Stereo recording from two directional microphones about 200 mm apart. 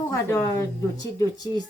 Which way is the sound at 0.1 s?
15° left (ahead or behind).